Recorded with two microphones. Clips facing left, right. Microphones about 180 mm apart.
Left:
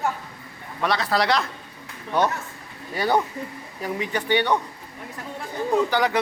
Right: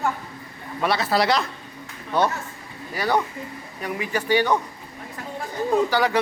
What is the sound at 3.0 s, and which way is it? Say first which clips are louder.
Speech: left 1 dB; 30° left (ahead or behind).